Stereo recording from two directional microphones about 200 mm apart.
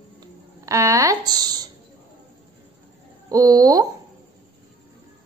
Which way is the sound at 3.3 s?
20° right (ahead or behind).